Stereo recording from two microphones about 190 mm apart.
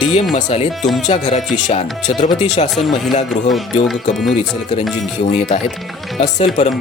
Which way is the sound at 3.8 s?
Centre (ahead or behind).